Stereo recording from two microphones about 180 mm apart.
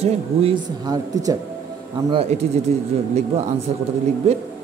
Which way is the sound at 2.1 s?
35° right (ahead or behind).